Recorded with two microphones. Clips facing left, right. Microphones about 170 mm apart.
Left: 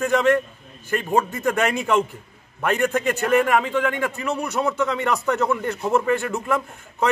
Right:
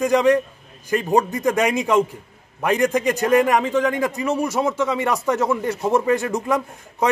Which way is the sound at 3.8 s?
40° right (ahead or behind).